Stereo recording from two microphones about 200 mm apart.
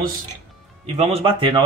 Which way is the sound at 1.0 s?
30° right (ahead or behind).